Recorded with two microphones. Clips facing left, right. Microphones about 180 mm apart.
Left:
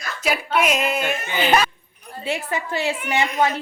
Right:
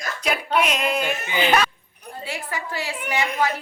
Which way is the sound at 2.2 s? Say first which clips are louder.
Left 6 dB; 25° left (ahead or behind).